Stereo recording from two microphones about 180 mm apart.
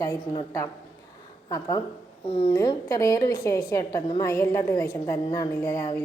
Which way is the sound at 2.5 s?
20° left (ahead or behind).